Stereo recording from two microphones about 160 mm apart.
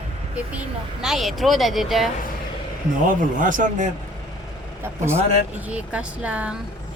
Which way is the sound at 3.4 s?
55° right (ahead or behind).